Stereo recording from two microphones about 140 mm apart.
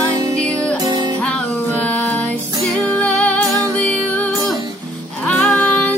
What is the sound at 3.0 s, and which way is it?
Music, 10° left (ahead or behind).